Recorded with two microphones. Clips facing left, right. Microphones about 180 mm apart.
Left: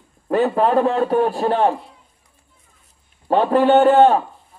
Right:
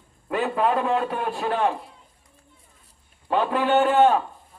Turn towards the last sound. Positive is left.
turn(degrees=35)  # may be behind; listen again after turning